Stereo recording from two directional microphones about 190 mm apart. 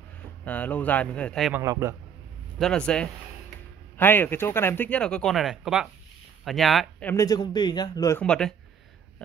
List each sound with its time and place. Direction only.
0.5 s speech: 10° left (ahead or behind)
1.5 s a man's voice: 15° right (ahead or behind)
2.6 s speech: 5° left (ahead or behind)
7.2 s a man's voice: 20° left (ahead or behind)
8.2 s speech: 5° left (ahead or behind)